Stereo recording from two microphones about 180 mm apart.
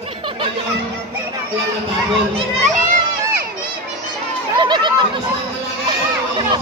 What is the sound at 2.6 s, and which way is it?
Crowd, 50° right (ahead or behind).